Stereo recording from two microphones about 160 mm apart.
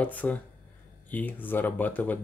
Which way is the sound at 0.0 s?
10° left (ahead or behind).